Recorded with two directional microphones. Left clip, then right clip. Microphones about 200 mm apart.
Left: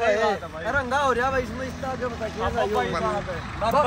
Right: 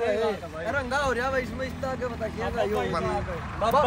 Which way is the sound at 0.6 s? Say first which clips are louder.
Left 4 dB; centre (ahead or behind).